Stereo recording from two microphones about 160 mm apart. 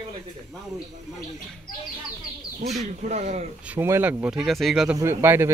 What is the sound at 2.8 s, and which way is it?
Speech, 45° right (ahead or behind).